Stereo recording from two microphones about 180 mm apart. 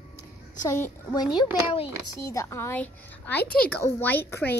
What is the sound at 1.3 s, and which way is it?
Speech, 30° left (ahead or behind).